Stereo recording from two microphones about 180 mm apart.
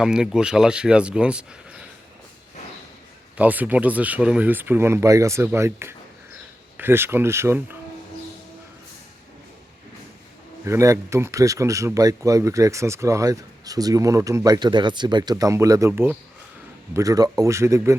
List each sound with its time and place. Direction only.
0.0 s speech: 5° right (ahead or behind)
3.3 s speech: 10° right (ahead or behind)
10.7 s speech: 15° right (ahead or behind)